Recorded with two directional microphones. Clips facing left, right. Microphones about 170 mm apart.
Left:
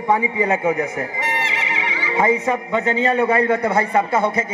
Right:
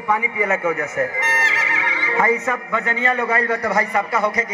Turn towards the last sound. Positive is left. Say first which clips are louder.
# left 2 dB
turn(degrees=25)  # may be behind; listen again after turning